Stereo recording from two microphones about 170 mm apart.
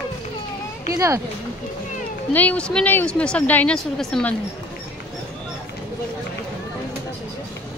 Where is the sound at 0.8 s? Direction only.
20° right (ahead or behind).